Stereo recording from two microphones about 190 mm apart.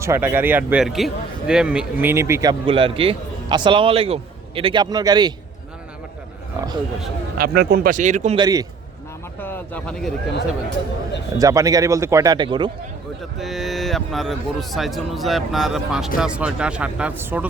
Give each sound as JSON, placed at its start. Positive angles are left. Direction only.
{"t": 0.0, "sound": "speech", "side_deg": -10}
{"t": 7.3, "sound": "speech", "side_deg": -55}
{"t": 8.4, "sound": "speech", "side_deg": -20}
{"t": 9.4, "sound": "speech", "side_deg": 10}
{"t": 11.3, "sound": "speech", "side_deg": -20}
{"t": 13.4, "sound": "speech", "side_deg": 0}